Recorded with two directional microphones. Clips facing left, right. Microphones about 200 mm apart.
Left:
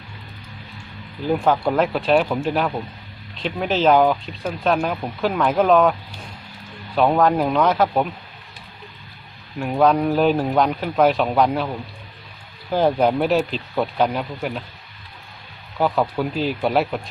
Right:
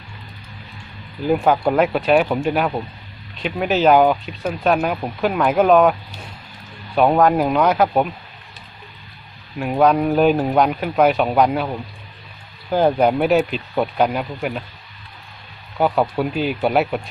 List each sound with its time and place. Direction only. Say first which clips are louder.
1.3 s speech: right 2 dB; 10° right (ahead or behind)
9.6 s speech: right 1 dB; 5° right (ahead or behind)
10.4 s speech: right 2 dB; 15° right (ahead or behind)
10.7 s speech: right 1 dB; 5° right (ahead or behind)
12.7 s speech: right 2 dB; 10° right (ahead or behind)
15.8 s speech: right 2 dB; 10° right (ahead or behind)